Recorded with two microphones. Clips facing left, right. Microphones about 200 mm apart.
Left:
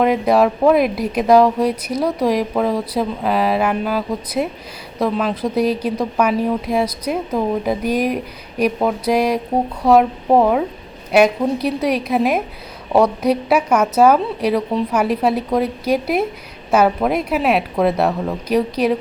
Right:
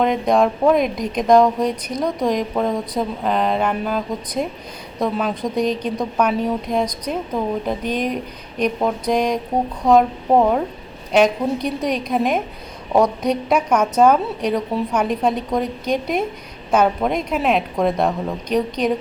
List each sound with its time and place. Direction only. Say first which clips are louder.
0.0 s a woman's voice: left 2 dB; 5° left (ahead or behind)
11.6 s a woman's voice: left 3 dB; 5° left (ahead or behind)